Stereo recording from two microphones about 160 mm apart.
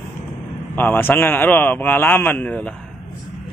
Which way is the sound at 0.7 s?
10° left (ahead or behind).